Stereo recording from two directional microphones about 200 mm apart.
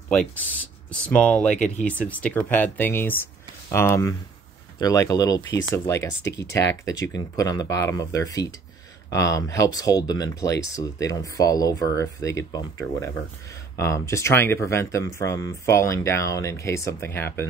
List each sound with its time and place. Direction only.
0.1 s speech: 5° left (ahead or behind)